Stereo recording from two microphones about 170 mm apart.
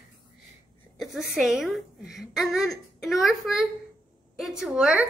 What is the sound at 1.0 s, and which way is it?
Speech, centre (ahead or behind).